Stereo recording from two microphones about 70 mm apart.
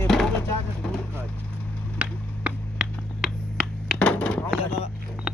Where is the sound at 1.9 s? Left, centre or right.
Centre.